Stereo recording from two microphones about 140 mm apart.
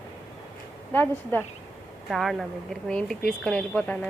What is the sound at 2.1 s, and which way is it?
Speech, centre (ahead or behind).